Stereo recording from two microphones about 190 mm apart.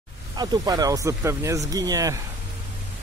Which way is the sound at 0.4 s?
20° right (ahead or behind).